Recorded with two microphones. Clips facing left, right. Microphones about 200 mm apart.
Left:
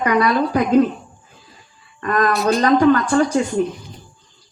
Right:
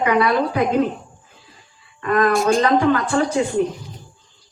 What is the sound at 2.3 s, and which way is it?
Speech, 50° right (ahead or behind).